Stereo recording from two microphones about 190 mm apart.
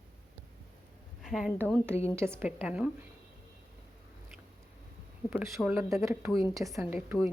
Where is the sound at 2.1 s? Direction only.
15° right (ahead or behind).